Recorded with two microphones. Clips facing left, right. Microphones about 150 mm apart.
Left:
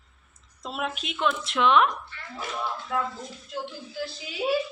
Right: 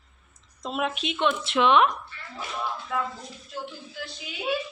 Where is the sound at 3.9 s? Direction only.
30° left (ahead or behind).